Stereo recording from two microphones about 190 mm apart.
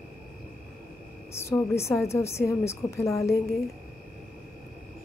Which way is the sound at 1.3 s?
15° left (ahead or behind).